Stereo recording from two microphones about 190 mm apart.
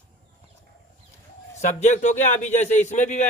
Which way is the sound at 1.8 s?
40° left (ahead or behind).